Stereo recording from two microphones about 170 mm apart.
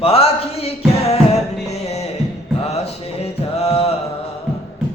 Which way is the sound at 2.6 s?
35° left (ahead or behind).